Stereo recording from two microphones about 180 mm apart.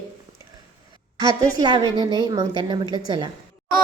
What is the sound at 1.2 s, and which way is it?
A woman's voice, 20° right (ahead or behind).